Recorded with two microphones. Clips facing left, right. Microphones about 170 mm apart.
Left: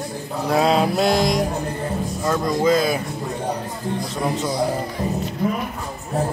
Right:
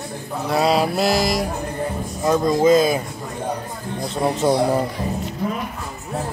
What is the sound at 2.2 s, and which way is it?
Speech, 20° right (ahead or behind).